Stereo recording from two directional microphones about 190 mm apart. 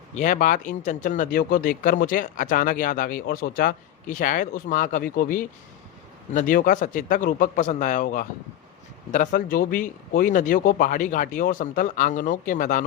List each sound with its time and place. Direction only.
0.2 s speech: 40° left (ahead or behind)